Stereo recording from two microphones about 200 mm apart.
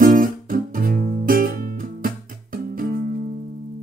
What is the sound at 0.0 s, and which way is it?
Guitar, 45° right (ahead or behind).